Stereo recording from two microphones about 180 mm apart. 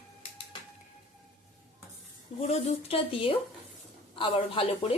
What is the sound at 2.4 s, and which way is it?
Speech, 35° left (ahead or behind).